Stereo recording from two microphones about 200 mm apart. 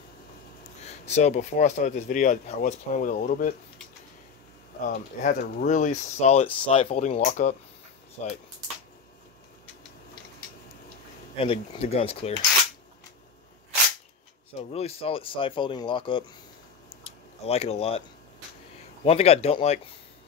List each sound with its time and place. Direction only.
0.8 s speech: 35° left (ahead or behind)
4.8 s speech: 45° left (ahead or behind)
11.3 s speech: 25° left (ahead or behind)
14.6 s speech: 30° left (ahead or behind)
19.0 s speech: 30° left (ahead or behind)